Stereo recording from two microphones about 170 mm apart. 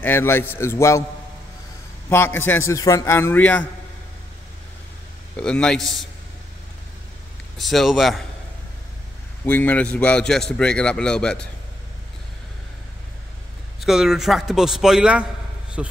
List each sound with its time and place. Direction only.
0.0 s a man's voice: 15° left (ahead or behind)
2.0 s a man's voice: 15° left (ahead or behind)
5.3 s a man's voice: 5° left (ahead or behind)
7.5 s a man's voice: centre (ahead or behind)
9.4 s a man's voice: 10° left (ahead or behind)
13.7 s a man's voice: centre (ahead or behind)